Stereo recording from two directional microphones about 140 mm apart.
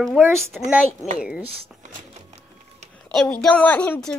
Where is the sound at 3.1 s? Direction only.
5° left (ahead or behind).